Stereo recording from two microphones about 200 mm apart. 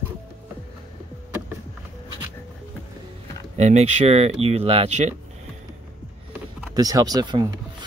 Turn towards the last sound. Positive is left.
turn(degrees=-20)  # may be behind; listen again after turning